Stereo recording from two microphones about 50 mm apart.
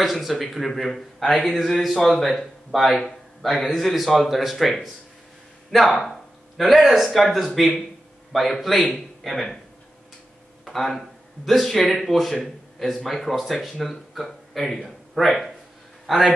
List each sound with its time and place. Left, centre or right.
0.0 s a man's voice: centre
10.6 s a man's voice: centre